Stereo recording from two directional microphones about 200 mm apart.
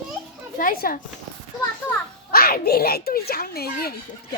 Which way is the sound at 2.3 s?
50° left (ahead or behind).